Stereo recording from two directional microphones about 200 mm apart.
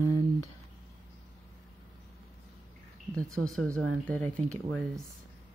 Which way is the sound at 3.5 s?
5° left (ahead or behind).